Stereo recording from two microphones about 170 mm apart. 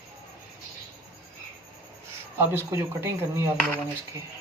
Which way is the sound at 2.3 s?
15° right (ahead or behind).